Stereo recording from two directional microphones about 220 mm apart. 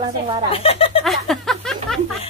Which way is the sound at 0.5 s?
25° left (ahead or behind).